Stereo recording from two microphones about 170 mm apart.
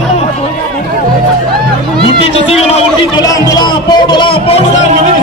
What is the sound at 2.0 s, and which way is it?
Speech, 35° left (ahead or behind).